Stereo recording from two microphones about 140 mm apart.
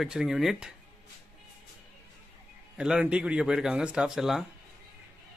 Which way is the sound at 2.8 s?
5° right (ahead or behind).